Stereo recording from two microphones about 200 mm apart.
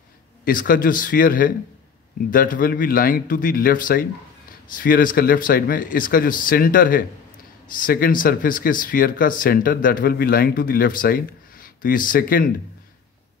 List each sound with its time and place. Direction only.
0.5 s speech: 45° left (ahead or behind)